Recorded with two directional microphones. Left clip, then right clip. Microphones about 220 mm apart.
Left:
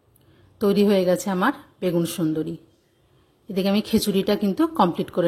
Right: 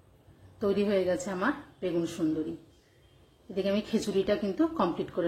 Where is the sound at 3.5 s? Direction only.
50° left (ahead or behind).